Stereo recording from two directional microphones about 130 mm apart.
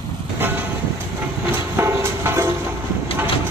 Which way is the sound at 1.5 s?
20° right (ahead or behind).